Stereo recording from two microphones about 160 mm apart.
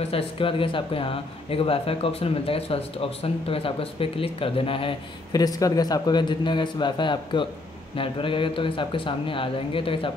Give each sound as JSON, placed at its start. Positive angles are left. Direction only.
{"t": 0.0, "sound": "speech", "side_deg": 35}